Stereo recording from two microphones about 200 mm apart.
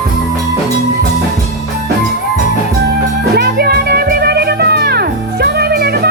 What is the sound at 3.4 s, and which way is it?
Music, 55° right (ahead or behind).